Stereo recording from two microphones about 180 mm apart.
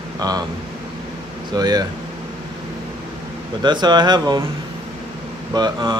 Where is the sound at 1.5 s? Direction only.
20° right (ahead or behind).